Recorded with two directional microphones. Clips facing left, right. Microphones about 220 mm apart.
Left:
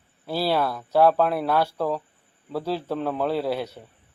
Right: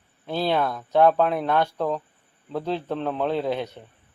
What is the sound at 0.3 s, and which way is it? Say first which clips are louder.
Speech: even; 5° left (ahead or behind).